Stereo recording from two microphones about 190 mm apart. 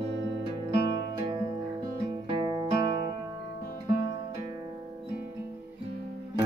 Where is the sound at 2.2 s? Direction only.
25° right (ahead or behind).